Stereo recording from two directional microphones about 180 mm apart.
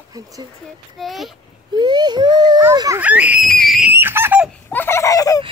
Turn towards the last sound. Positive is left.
turn(degrees=20)  # may be behind; listen again after turning